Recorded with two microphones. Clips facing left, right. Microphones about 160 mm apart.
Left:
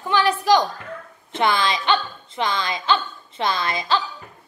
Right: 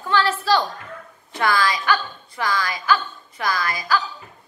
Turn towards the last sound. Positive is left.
turn(degrees=25)  # may be behind; listen again after turning